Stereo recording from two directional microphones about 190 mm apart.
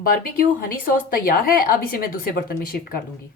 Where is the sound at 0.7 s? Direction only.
50° left (ahead or behind).